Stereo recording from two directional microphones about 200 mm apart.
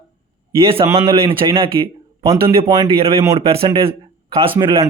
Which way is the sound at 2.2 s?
15° right (ahead or behind).